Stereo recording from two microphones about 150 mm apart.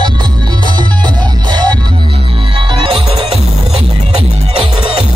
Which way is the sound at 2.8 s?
35° right (ahead or behind).